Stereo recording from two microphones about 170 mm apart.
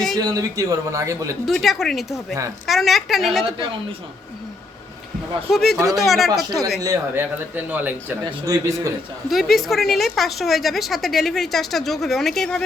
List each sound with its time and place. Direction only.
0.2 s a man's voice: 20° right (ahead or behind)
1.5 s a woman's voice: centre (ahead or behind)
5.5 s a woman's voice: centre (ahead or behind)
6.8 s a man's voice: 15° right (ahead or behind)
9.3 s a woman's voice: centre (ahead or behind)